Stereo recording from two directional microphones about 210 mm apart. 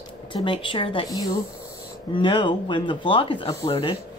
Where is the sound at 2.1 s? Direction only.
25° left (ahead or behind).